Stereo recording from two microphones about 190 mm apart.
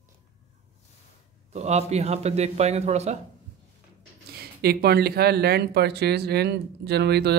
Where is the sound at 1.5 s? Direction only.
35° right (ahead or behind).